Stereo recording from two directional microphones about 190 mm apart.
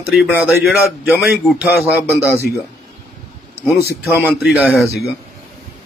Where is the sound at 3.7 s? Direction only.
5° right (ahead or behind).